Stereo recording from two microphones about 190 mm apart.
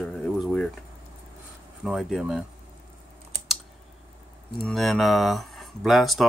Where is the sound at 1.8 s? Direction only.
Centre (ahead or behind).